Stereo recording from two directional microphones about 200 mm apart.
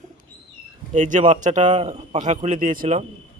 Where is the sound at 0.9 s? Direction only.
35° right (ahead or behind).